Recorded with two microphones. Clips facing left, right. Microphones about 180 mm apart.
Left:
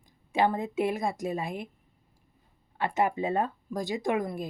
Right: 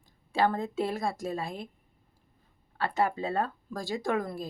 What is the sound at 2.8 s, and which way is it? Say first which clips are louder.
Speech: left 1 dB; 20° left (ahead or behind).